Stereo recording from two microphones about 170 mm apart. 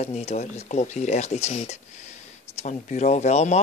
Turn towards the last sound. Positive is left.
turn(degrees=40)  # may be behind; listen again after turning